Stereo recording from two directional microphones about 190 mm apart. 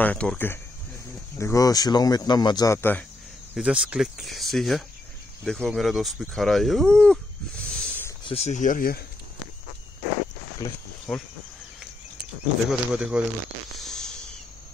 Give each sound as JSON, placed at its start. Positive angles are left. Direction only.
{"t": 0.0, "sound": "speech", "side_deg": 5}
{"t": 3.5, "sound": "speech", "side_deg": -5}
{"t": 8.3, "sound": "speech", "side_deg": 35}
{"t": 11.1, "sound": "speech", "side_deg": 10}
{"t": 12.6, "sound": "speech", "side_deg": -5}
{"t": 13.7, "sound": "a sound", "side_deg": 0}